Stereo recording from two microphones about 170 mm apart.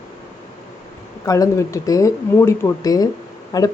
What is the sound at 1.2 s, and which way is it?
Speech, 20° left (ahead or behind).